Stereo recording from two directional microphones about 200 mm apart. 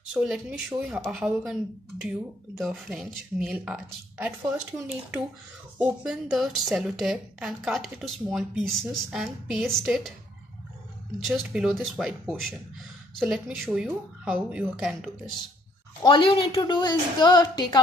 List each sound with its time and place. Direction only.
0.1 s a woman's voice: 5° right (ahead or behind)
11.1 s a woman's voice: centre (ahead or behind)
16.0 s a woman's voice: 25° left (ahead or behind)